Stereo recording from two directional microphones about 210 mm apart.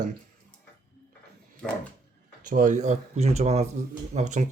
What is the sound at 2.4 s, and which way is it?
Speech, 40° right (ahead or behind).